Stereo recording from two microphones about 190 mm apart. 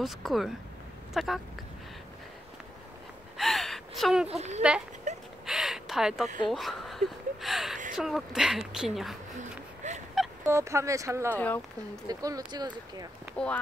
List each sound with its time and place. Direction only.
0.0 s speech: centre (ahead or behind)
3.3 s gasp: centre (ahead or behind)
4.3 s speech: 35° right (ahead or behind)
5.1 s a sound: 35° right (ahead or behind)
5.5 s a sound: centre (ahead or behind)
6.5 s speech: centre (ahead or behind)
7.4 s a sound: centre (ahead or behind)
7.9 s speech: centre (ahead or behind)
9.4 s a sound: 40° right (ahead or behind)
10.4 s speech: 15° right (ahead or behind)
11.3 s speech: 10° left (ahead or behind)
12.1 s speech: 20° right (ahead or behind)